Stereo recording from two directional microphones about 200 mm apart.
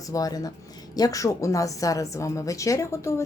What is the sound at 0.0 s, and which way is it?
Speech, 15° left (ahead or behind).